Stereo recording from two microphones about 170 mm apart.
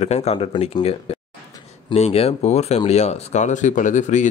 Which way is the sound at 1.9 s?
35° left (ahead or behind).